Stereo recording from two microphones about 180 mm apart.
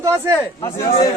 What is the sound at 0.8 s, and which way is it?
Speech, 50° left (ahead or behind).